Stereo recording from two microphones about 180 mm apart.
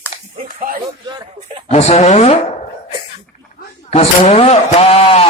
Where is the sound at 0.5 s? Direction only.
50° right (ahead or behind).